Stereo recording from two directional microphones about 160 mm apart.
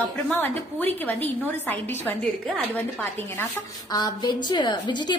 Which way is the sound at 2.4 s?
10° left (ahead or behind).